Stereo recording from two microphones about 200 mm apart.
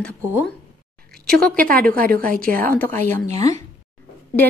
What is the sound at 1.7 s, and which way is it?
A woman's voice, 45° right (ahead or behind).